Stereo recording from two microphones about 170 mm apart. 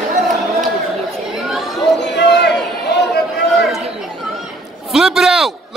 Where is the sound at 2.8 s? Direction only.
80° left.